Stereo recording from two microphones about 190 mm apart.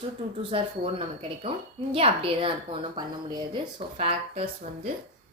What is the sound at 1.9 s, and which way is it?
Speech, 30° right (ahead or behind).